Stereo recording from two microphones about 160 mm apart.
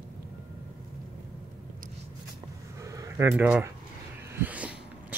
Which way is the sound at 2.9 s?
15° right (ahead or behind).